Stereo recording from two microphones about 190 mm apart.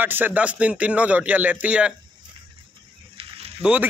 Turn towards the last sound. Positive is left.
turn(degrees=-5)  # may be behind; listen again after turning